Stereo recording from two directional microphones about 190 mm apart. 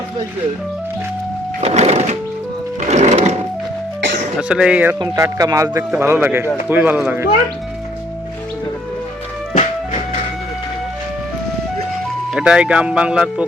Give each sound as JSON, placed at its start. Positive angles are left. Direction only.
{"t": 1.6, "sound": "music", "side_deg": -35}
{"t": 4.4, "sound": "speech", "side_deg": -5}
{"t": 4.9, "sound": "speech", "side_deg": -15}
{"t": 12.3, "sound": "speech", "side_deg": -5}